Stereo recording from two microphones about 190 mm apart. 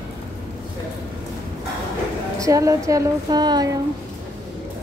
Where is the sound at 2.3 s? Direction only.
15° right (ahead or behind).